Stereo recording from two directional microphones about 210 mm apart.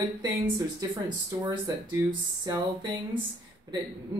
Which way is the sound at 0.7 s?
20° right (ahead or behind).